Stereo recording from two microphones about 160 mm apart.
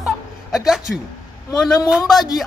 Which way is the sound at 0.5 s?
Centre (ahead or behind).